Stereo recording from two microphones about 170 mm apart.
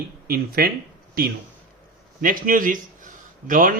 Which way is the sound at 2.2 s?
55° right (ahead or behind).